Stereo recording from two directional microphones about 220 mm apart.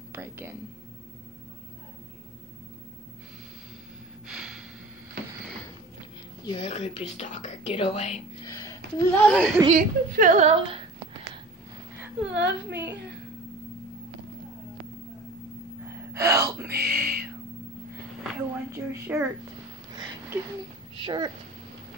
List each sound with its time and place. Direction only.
0.1 s speech: 10° right (ahead or behind)
4.3 s gasp: 5° right (ahead or behind)
6.4 s speech: 25° left (ahead or behind)
8.5 s a sound: 10° left (ahead or behind)
9.7 s a woman's voice: 40° right (ahead or behind)
12.3 s a woman's voice: 50° right (ahead or behind)
15.9 s gasp: 10° right (ahead or behind)
16.8 s a sound: 10° right (ahead or behind)
18.7 s a woman's voice: 10° right (ahead or behind)
19.9 s a sound: 20° right (ahead or behind)
20.9 s speech: 20° right (ahead or behind)